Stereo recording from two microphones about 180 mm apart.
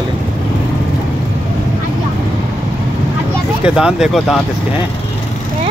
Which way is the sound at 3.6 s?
5° right (ahead or behind).